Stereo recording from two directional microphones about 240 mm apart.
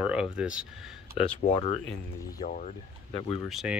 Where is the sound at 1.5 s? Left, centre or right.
Left.